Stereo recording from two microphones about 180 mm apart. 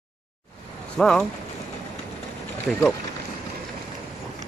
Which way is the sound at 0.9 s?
5° left (ahead or behind).